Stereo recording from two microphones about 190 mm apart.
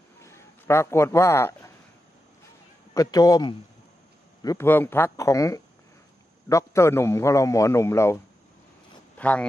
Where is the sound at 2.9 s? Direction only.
20° left (ahead or behind).